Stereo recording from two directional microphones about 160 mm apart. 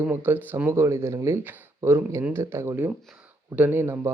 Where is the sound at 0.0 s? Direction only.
10° right (ahead or behind).